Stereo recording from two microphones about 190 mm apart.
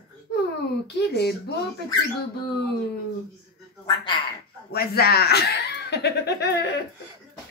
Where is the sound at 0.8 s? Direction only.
60° left (ahead or behind).